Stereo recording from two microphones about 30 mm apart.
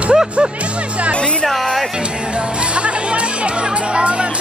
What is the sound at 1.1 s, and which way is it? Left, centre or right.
Speech, left.